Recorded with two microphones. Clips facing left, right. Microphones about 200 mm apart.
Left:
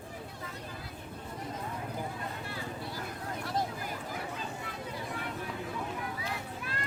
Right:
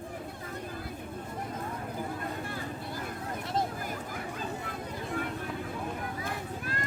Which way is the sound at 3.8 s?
50° right (ahead or behind).